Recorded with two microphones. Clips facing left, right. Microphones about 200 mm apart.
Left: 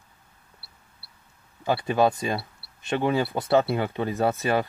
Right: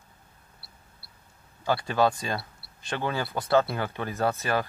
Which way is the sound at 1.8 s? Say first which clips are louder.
Left 4 dB; 20° left (ahead or behind).